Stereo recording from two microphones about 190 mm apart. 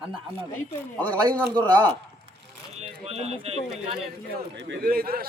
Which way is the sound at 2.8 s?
35° right (ahead or behind).